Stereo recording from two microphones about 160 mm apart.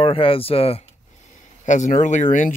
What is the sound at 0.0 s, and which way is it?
Speech, 35° left (ahead or behind).